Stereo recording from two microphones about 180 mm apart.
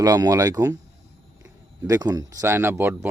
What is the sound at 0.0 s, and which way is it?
Speech, 20° right (ahead or behind).